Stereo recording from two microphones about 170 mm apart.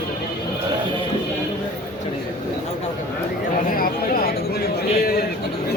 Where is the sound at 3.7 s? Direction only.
60° left (ahead or behind).